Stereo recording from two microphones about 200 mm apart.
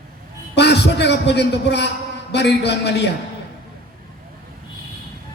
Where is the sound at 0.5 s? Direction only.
55° left (ahead or behind).